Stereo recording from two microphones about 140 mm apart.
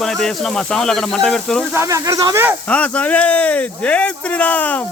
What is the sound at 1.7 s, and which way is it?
Speech, 20° right (ahead or behind).